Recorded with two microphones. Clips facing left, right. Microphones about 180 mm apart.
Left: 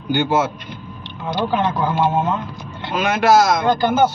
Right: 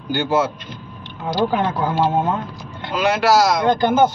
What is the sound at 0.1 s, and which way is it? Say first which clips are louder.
Speech: left 2 dB; 20° left (ahead or behind).